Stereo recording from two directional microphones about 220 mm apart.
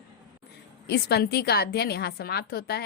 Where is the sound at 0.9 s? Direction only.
45° left (ahead or behind).